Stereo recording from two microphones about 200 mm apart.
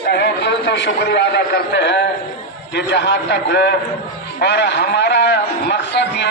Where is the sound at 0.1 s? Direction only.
60° left (ahead or behind).